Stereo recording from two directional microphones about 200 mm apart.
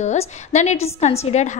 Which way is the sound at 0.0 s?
35° left (ahead or behind).